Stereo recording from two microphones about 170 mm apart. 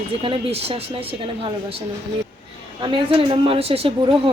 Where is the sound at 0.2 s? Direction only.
35° right (ahead or behind).